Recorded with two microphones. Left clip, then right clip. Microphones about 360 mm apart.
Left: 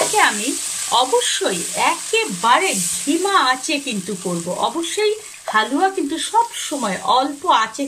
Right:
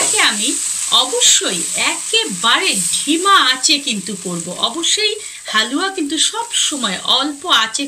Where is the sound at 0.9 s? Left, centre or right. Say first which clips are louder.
Right 3 dB; left.